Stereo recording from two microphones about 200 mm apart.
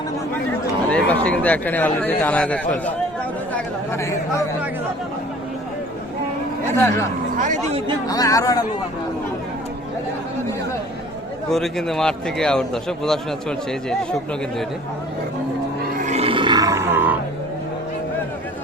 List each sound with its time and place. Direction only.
0.9 s speech: 5° left (ahead or behind)
3.5 s chatter: 15° left (ahead or behind)
7.3 s speech: 40° right (ahead or behind)
8.0 s speech: 20° left (ahead or behind)
11.4 s a man's voice: centre (ahead or behind)
15.8 s grunt: 40° right (ahead or behind); by 17.2 s 10° right (ahead or behind)